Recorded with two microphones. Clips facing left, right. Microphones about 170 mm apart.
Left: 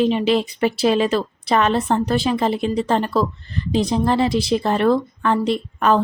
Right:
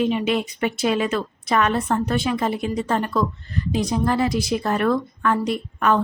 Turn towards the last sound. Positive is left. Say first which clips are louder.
# left 3 dB
turn(degrees=30)  # may be behind; listen again after turning